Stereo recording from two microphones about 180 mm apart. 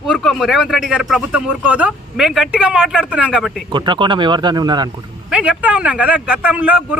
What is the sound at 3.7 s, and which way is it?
Speech, 25° right (ahead or behind).